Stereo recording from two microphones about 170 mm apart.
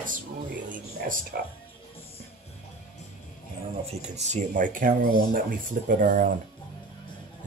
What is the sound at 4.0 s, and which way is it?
Speech, 40° right (ahead or behind).